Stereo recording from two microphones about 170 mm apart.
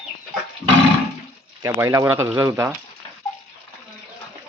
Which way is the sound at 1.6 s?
20° right (ahead or behind).